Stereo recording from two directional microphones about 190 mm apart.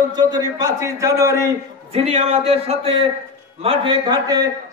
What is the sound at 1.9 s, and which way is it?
A man's voice, 35° right (ahead or behind).